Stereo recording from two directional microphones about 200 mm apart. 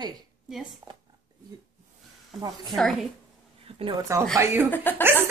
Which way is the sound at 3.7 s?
30° right (ahead or behind).